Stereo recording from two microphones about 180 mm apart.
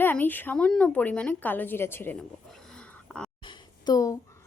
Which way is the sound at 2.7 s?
5° left (ahead or behind).